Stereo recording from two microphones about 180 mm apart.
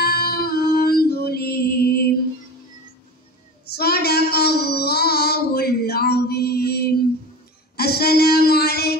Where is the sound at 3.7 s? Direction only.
60° left (ahead or behind).